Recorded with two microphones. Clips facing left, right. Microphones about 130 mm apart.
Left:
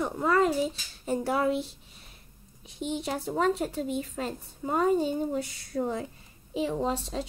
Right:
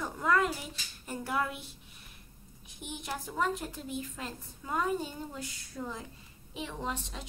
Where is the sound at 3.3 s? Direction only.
70° left (ahead or behind).